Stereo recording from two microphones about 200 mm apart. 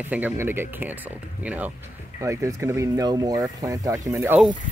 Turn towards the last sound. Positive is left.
turn(degrees=-15)  # may be behind; listen again after turning